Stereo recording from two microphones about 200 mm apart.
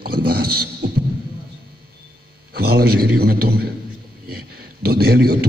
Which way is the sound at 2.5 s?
50° right (ahead or behind).